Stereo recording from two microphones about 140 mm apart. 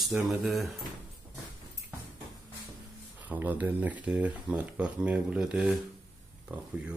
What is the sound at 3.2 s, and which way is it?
Speech, 10° right (ahead or behind).